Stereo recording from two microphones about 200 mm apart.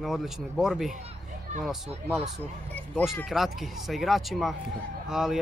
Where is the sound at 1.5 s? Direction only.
35° right (ahead or behind).